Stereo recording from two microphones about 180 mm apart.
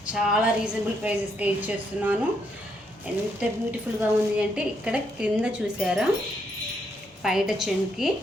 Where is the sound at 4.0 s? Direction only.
5° right (ahead or behind).